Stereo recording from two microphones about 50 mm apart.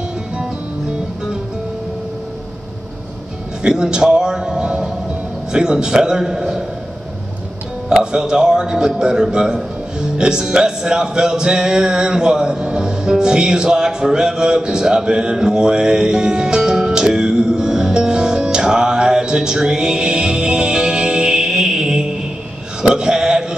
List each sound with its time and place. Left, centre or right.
3.6 s a man's voice: centre
7.9 s a man's voice: centre
22.8 s a sound: centre